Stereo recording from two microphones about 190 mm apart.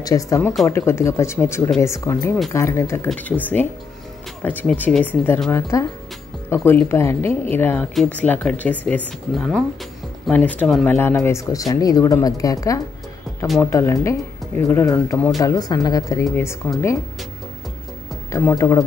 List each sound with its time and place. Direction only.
0.0 s speech: 15° left (ahead or behind)
18.3 s speech: 15° left (ahead or behind)